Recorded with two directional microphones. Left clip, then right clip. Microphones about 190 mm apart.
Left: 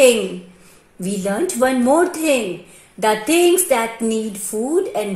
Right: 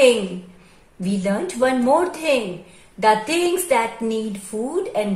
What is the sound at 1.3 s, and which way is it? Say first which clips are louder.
Speech: left 3 dB; 35° left (ahead or behind).